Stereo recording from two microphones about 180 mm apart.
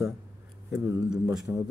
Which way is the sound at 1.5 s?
10° right (ahead or behind).